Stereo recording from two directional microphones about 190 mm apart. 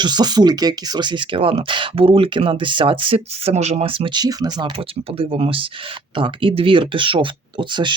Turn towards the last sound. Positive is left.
turn(degrees=-25)  # may be behind; listen again after turning